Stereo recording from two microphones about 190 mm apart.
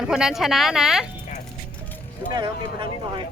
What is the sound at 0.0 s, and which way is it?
Speech, 5° right (ahead or behind).